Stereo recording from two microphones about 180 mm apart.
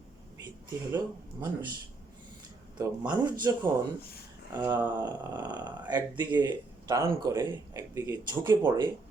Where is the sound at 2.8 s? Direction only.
15° right (ahead or behind).